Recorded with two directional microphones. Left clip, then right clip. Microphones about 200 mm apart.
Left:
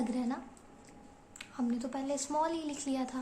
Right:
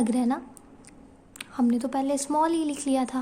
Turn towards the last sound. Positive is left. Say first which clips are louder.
# right 10 dB
turn(degrees=-50)  # may be behind; listen again after turning